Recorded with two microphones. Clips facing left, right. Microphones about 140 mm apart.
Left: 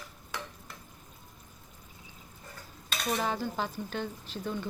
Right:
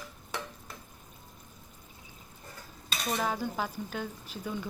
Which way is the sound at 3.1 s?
Centre (ahead or behind).